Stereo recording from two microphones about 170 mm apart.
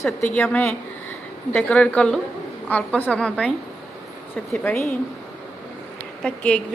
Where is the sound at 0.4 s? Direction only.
10° left (ahead or behind).